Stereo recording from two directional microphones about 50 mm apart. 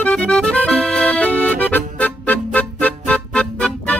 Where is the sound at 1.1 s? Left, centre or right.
Left.